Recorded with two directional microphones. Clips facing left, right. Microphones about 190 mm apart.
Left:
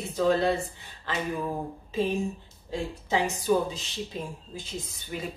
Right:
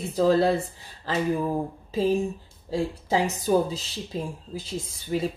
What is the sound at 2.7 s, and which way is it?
A woman's voice, 35° right (ahead or behind).